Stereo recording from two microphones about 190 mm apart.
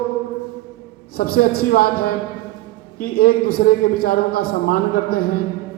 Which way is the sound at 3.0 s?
50° left (ahead or behind).